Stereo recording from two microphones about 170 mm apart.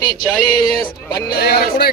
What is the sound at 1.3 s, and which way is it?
Speech, 65° left (ahead or behind).